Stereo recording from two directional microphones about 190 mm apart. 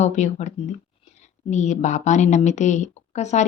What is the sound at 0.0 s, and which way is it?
A woman's voice, 35° left (ahead or behind).